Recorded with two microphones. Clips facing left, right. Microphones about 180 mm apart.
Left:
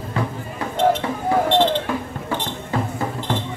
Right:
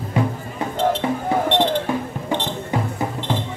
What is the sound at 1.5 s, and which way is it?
Basketball bounce, 15° right (ahead or behind).